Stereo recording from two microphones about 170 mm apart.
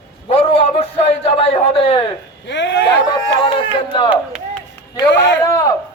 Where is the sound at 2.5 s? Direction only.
90° left.